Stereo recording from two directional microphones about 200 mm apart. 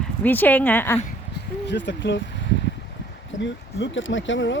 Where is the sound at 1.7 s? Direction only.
60° left (ahead or behind).